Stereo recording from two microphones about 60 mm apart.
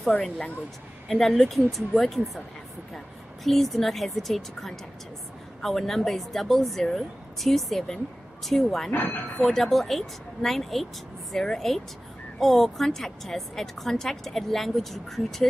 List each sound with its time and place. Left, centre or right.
0.1 s speech: left
1.0 s a woman's voice: centre
3.4 s a woman's voice: centre
8.9 s speech: left
9.4 s a woman's voice: centre